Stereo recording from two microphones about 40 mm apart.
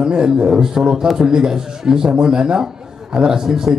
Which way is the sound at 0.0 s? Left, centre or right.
Centre.